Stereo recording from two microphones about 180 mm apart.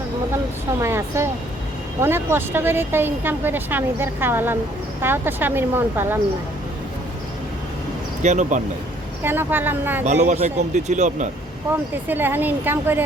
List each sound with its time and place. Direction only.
0.8 s speech: 15° right (ahead or behind)
8.2 s speech: 40° right (ahead or behind)
9.2 s speech: 10° right (ahead or behind)
10.0 s speech: 40° right (ahead or behind)
12.0 s speech: 10° right (ahead or behind)